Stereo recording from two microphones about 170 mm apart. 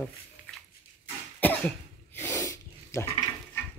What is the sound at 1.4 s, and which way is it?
Goat, 10° left (ahead or behind).